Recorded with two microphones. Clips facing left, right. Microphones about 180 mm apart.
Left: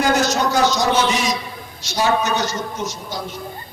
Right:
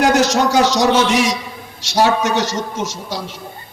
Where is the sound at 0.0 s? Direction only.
90° right.